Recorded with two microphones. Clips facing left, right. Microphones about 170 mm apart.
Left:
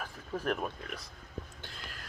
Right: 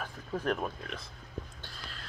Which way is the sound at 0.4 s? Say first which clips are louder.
Right 1 dB; 5° left (ahead or behind).